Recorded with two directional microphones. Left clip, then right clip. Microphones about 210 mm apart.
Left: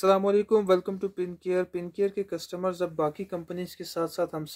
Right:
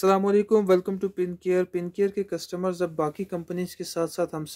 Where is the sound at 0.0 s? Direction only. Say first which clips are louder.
Right 1 dB; 30° right (ahead or behind).